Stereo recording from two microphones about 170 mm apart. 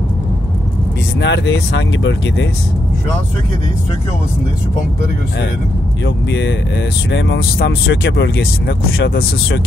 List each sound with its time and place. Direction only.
1.2 s speech: 90° left
6.0 s speech: 90° left; by 9.2 s 70° left (ahead or behind)